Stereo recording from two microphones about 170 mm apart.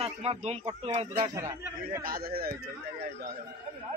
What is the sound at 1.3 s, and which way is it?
Speech, 15° right (ahead or behind).